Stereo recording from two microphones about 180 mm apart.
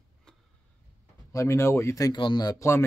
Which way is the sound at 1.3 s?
15° left (ahead or behind).